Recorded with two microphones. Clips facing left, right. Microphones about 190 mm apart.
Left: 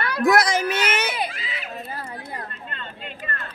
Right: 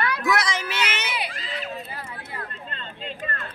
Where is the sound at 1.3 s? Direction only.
5° left (ahead or behind).